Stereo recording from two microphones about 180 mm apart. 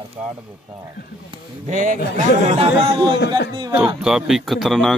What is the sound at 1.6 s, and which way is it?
Speech, 45° right (ahead or behind).